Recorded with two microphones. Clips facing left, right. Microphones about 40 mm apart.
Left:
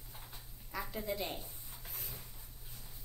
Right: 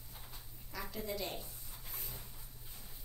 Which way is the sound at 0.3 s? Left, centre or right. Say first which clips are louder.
Left 5 dB; centre.